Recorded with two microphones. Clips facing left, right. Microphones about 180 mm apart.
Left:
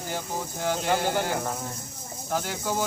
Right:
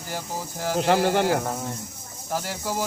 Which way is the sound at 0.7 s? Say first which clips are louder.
Right 6 dB; 75° right (ahead or behind).